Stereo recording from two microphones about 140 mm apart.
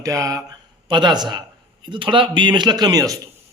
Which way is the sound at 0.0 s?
25° right (ahead or behind).